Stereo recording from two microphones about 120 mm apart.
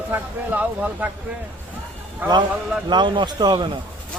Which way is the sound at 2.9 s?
40° right (ahead or behind).